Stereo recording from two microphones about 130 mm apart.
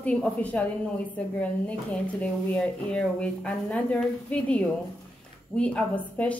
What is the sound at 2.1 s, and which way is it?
A woman's voice, 10° left (ahead or behind).